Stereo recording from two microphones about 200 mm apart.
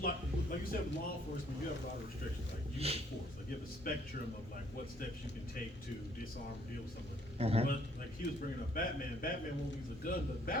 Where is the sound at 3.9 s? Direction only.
45° left (ahead or behind).